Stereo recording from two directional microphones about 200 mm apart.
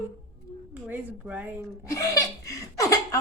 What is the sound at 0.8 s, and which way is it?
Speech, 10° right (ahead or behind).